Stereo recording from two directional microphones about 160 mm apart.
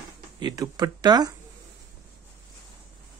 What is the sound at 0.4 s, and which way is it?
Speech, 25° right (ahead or behind).